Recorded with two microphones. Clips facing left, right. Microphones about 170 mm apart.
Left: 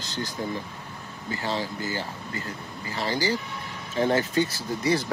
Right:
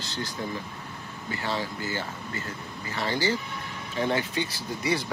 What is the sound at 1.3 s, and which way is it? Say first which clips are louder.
Speech: left 2 dB; 35° left (ahead or behind).